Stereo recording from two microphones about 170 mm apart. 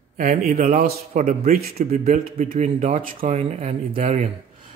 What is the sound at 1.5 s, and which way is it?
Speech, 65° right (ahead or behind).